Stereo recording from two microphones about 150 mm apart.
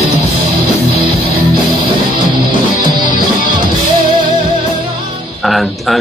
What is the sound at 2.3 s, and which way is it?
Music, 30° right (ahead or behind).